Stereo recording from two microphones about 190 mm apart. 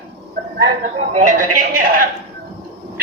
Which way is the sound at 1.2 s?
45° right (ahead or behind).